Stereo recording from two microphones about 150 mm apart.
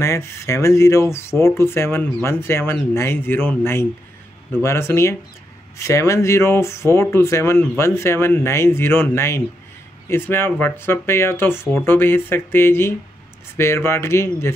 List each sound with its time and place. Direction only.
0.0 s speech: 20° left (ahead or behind)